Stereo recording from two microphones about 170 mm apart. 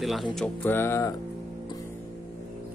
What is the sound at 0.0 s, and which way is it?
Speech, centre (ahead or behind).